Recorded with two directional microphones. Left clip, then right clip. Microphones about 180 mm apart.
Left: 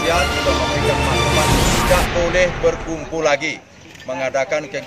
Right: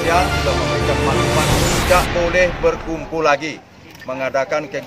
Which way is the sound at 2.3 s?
5° right (ahead or behind).